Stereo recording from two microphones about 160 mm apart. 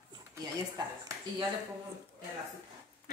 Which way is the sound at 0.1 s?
25° right (ahead or behind).